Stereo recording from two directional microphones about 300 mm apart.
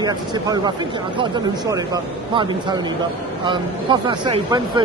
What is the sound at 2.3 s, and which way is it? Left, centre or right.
Speech, centre.